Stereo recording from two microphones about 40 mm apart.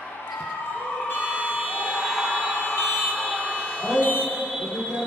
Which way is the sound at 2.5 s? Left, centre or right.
Left.